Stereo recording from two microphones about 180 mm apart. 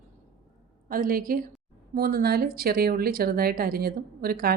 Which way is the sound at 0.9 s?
55° right (ahead or behind).